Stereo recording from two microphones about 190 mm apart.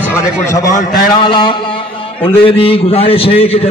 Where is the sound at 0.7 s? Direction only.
45° left (ahead or behind).